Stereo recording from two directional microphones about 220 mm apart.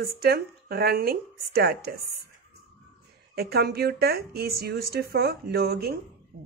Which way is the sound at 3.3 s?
45° right (ahead or behind).